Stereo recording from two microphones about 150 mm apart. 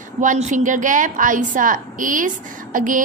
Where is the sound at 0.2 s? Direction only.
55° right (ahead or behind).